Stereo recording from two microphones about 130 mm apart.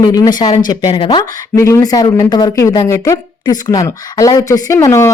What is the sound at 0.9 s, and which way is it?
Speech, 45° left (ahead or behind).